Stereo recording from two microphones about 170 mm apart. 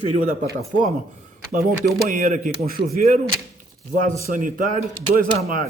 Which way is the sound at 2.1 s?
55° right (ahead or behind).